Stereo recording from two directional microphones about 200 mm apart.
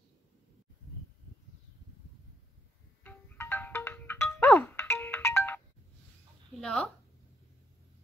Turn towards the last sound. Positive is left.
turn(degrees=5)  # may be behind; listen again after turning